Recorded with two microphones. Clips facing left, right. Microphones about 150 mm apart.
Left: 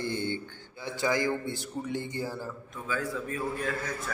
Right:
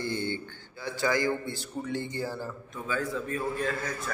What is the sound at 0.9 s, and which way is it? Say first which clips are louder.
Speech: right 1 dB; 20° left (ahead or behind).